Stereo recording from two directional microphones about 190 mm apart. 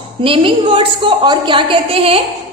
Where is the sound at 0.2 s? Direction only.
30° right (ahead or behind).